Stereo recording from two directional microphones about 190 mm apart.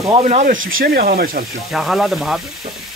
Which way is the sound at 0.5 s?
90° right.